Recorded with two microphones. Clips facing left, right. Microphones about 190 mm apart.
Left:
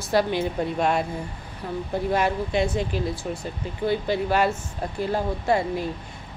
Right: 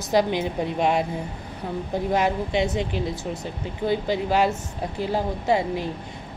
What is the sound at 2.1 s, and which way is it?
A woman's voice, 15° right (ahead or behind).